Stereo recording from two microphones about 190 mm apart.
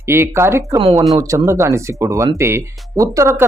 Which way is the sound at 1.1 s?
15° right (ahead or behind).